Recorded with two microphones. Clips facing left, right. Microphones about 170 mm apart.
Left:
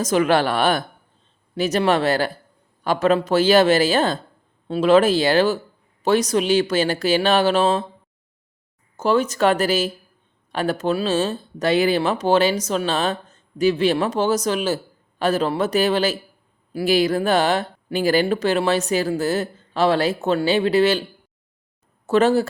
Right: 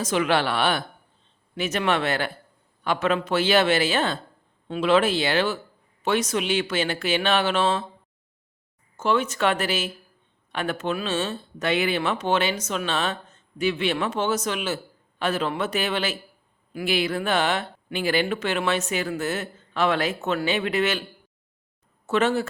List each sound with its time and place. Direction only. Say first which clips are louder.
0.0 s speech: left 5 dB; 40° left (ahead or behind)
9.0 s speech: left 5 dB; 40° left (ahead or behind)
22.0 s speech: left 6 dB; 35° left (ahead or behind)